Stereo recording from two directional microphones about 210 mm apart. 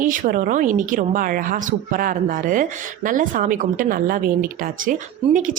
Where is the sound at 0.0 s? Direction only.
40° right (ahead or behind).